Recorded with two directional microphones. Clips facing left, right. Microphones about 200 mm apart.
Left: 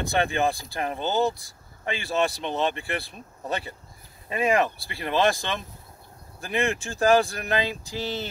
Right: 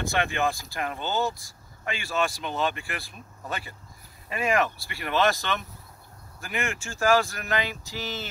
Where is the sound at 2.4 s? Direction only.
25° left (ahead or behind).